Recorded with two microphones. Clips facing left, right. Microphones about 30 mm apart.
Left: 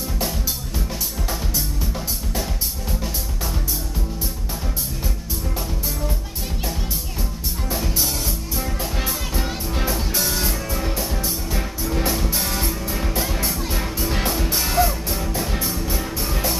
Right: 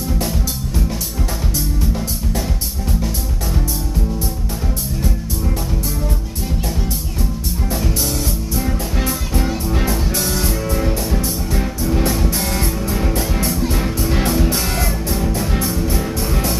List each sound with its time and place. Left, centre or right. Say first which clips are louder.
0.2 s music: right 4 dB; centre
8.9 s music: right 5 dB; centre